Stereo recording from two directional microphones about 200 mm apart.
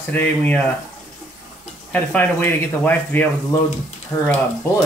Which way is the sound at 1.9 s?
10° left (ahead or behind).